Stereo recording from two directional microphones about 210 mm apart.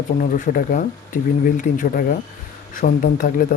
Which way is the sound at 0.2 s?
40° left (ahead or behind).